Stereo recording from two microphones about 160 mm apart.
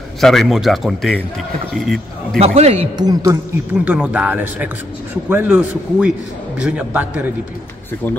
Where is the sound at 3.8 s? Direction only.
10° right (ahead or behind).